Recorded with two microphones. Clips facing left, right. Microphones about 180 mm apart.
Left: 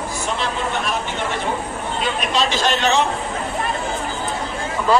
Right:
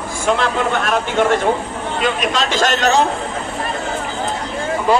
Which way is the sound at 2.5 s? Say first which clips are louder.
Right 3 dB; 45° right (ahead or behind).